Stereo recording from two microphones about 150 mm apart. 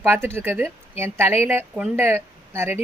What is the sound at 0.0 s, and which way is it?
Speech, 15° right (ahead or behind).